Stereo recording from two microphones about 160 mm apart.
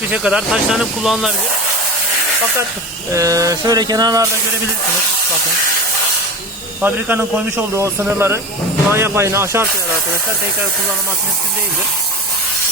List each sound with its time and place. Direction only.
0.1 s speech: 5° right (ahead or behind)
3.1 s a sound: 20° right (ahead or behind)
6.8 s a man's voice: 10° right (ahead or behind)